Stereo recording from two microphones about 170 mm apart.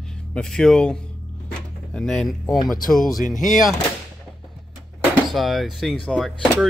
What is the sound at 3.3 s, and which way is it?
Speech, 50° left (ahead or behind).